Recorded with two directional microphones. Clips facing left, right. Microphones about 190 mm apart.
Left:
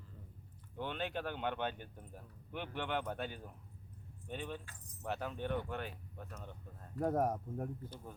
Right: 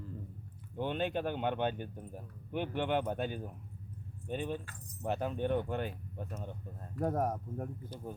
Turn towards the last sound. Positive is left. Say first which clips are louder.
# right 1 dB
turn(degrees=5)  # may be behind; listen again after turning